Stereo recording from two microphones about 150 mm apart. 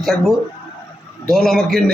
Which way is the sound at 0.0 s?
Centre (ahead or behind).